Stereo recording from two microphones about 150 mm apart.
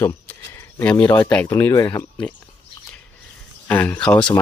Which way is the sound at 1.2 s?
10° left (ahead or behind).